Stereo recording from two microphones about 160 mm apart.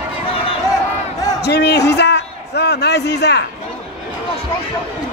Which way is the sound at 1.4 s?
90° left.